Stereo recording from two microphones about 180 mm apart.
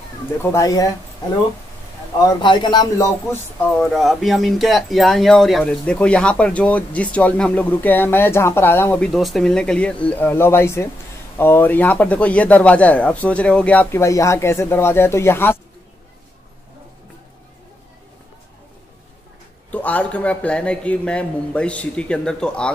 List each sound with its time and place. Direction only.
0.4 s speech: 15° left (ahead or behind)
2.2 s a man's voice: 25° left (ahead or behind)
3.7 s speech: centre (ahead or behind)
19.7 s speech: 10° left (ahead or behind)